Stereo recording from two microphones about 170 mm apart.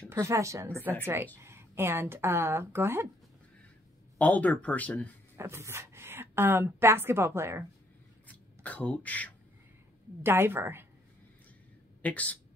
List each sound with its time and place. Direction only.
0.1 s a woman's voice: 15° right (ahead or behind)
4.2 s speech: 10° left (ahead or behind)
5.4 s a woman's voice: 15° right (ahead or behind)
8.3 s speech: 10° left (ahead or behind)
10.2 s a woman's voice: 15° right (ahead or behind)
12.0 s speech: 10° left (ahead or behind)